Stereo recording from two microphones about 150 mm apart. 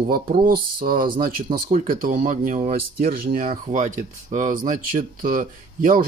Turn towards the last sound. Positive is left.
turn(degrees=-70)  # may be behind; listen again after turning